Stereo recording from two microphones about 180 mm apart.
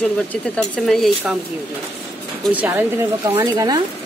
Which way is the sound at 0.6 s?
Centre (ahead or behind).